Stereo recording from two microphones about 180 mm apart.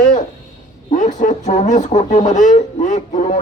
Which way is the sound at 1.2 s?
40° left (ahead or behind).